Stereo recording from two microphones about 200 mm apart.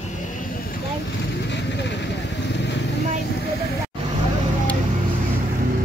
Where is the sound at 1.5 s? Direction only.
60° left (ahead or behind).